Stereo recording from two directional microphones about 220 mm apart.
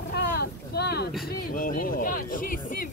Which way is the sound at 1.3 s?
40° left (ahead or behind).